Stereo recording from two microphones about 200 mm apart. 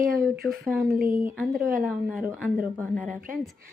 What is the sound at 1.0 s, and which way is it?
Speech, 25° left (ahead or behind).